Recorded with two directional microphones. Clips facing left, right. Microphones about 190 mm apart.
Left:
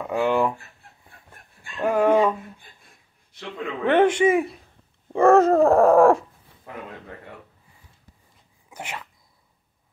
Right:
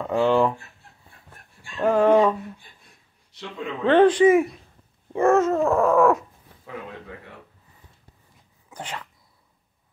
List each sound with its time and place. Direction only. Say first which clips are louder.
0.0 s speech: right 2 dB; 10° left (ahead or behind)
1.8 s speech: right 1 dB; 10° left (ahead or behind)
3.8 s speech: right 3 dB; 20° left (ahead or behind)
5.1 s dog: left 3 dB; 35° left (ahead or behind)
8.6 s speech: right 1 dB; 10° left (ahead or behind)